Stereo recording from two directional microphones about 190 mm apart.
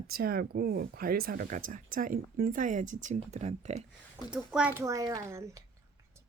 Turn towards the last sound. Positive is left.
turn(degrees=-15)  # may be behind; listen again after turning